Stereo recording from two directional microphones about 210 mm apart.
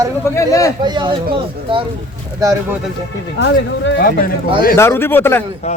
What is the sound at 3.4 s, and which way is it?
Speech, 60° left (ahead or behind).